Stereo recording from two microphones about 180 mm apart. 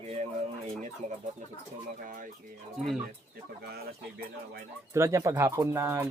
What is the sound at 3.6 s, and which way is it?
Speech, 60° right (ahead or behind).